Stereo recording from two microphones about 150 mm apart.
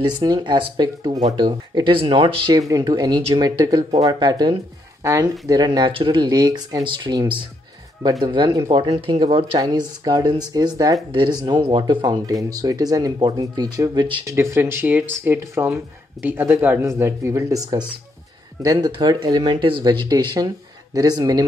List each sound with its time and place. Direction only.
0.0 s speech: 30° right (ahead or behind)
11.1 s speech: 35° right (ahead or behind)
14.2 s speech: 20° right (ahead or behind)